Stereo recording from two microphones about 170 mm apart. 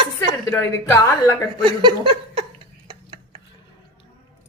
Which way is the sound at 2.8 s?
25° right (ahead or behind).